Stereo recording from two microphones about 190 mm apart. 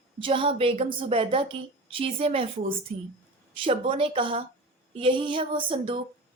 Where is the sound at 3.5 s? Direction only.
25° right (ahead or behind).